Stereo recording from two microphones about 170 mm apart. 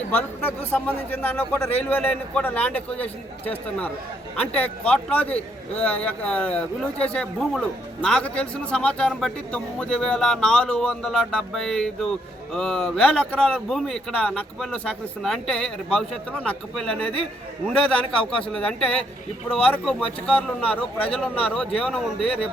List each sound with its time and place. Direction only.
0.1 s a man's voice: 10° left (ahead or behind)